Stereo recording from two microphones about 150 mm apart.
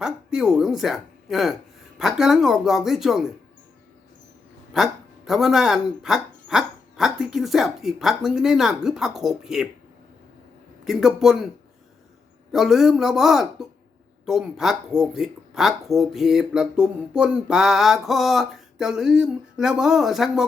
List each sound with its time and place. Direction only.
0.0 s speech: 5° right (ahead or behind)
4.7 s speech: centre (ahead or behind)
10.8 s speech: centre (ahead or behind)
12.5 s speech: 5° right (ahead or behind)